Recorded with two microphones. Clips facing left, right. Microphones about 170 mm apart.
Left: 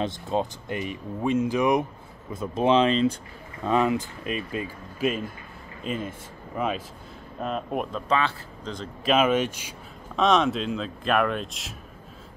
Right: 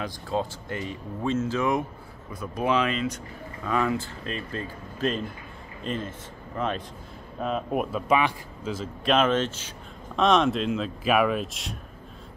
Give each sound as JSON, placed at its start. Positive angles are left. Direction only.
{"t": 0.0, "sound": "speech", "side_deg": 20}
{"t": 7.4, "sound": "speech", "side_deg": 0}
{"t": 9.1, "sound": "speech", "side_deg": 10}
{"t": 10.1, "sound": "speech", "side_deg": 0}